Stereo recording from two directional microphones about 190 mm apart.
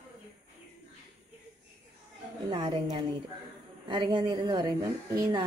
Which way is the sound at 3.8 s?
25° right (ahead or behind).